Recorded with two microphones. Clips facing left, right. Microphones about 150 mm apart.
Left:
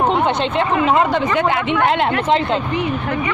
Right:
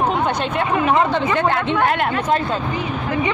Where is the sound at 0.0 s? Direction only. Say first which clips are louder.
Left 3 dB; 25° left (ahead or behind).